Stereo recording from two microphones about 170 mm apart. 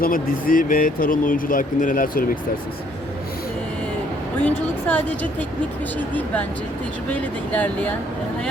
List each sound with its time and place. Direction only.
0.0 s speech: 55° left (ahead or behind)
4.4 s speech: 10° left (ahead or behind)